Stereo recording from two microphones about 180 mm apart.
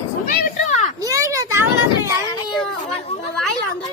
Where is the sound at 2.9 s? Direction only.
35° left (ahead or behind).